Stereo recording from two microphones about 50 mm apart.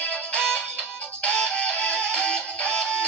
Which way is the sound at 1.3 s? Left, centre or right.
Left.